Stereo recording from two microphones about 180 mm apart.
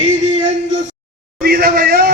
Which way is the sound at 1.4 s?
55° right (ahead or behind).